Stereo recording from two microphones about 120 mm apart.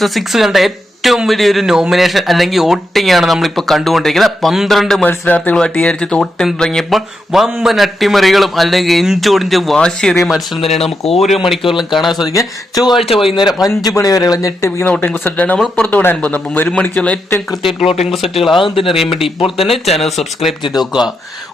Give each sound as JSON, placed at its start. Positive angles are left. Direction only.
{"t": 0.0, "sound": "speech", "side_deg": 0}
{"t": 5.0, "sound": "speech", "side_deg": 15}
{"t": 11.0, "sound": "speech", "side_deg": 60}
{"t": 11.9, "sound": "speech", "side_deg": 0}
{"t": 12.2, "sound": "speech", "side_deg": 30}
{"t": 14.8, "sound": "speech", "side_deg": 15}
{"t": 18.5, "sound": "speech", "side_deg": 45}
{"t": 18.9, "sound": "speech", "side_deg": 0}